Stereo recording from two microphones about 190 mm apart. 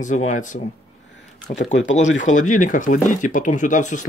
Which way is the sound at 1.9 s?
40° left (ahead or behind).